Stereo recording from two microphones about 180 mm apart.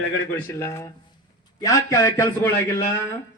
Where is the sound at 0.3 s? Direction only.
15° left (ahead or behind).